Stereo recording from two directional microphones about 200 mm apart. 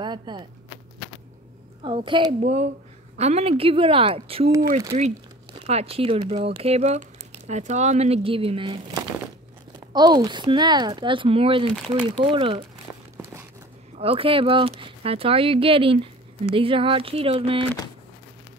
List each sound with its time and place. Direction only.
0.0 s speech: 20° right (ahead or behind)
1.8 s speech: 25° right (ahead or behind)
9.9 s speech: 20° right (ahead or behind)
13.9 s speech: 30° right (ahead or behind)